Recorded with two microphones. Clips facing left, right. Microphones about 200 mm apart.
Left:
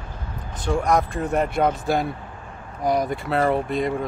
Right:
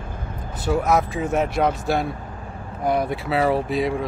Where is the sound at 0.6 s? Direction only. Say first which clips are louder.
Right 1 dB; 5° right (ahead or behind).